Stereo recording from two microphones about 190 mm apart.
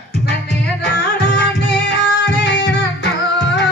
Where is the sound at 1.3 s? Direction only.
60° left (ahead or behind).